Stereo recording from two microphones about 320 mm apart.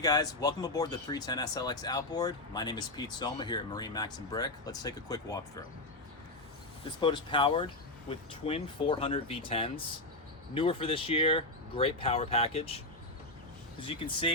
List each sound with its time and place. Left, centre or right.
0.0 s speech: centre
7.0 s speech: centre
13.8 s speech: centre